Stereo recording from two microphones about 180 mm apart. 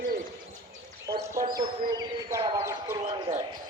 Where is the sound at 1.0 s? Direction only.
20° right (ahead or behind).